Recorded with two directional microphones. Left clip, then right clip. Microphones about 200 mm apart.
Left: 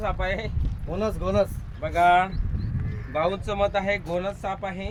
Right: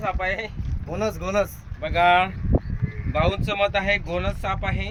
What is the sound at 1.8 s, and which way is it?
Speech, 25° right (ahead or behind).